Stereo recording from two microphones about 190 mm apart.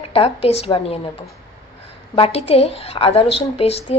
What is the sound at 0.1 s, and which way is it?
A woman's voice, 30° left (ahead or behind).